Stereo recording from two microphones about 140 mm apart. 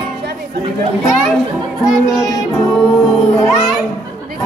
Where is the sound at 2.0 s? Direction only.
Centre (ahead or behind).